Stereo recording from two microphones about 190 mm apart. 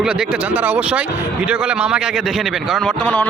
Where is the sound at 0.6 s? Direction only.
5° right (ahead or behind).